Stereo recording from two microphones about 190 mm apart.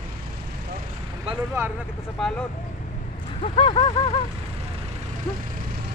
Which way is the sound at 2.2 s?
Centre (ahead or behind).